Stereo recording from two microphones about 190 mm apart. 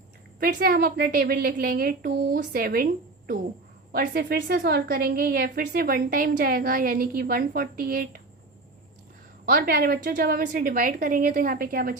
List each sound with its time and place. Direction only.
0.3 s a woman's voice: 50° right (ahead or behind)
9.5 s a woman's voice: 50° right (ahead or behind)